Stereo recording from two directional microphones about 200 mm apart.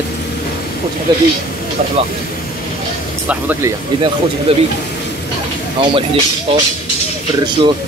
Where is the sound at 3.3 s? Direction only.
10° right (ahead or behind).